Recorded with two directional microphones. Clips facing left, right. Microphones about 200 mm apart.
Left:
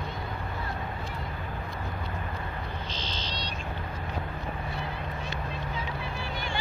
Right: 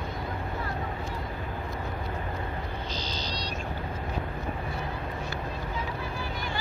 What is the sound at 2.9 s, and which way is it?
Vehicle, 40° right (ahead or behind).